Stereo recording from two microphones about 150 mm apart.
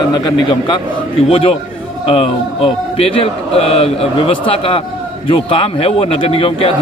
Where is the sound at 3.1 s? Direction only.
40° left (ahead or behind).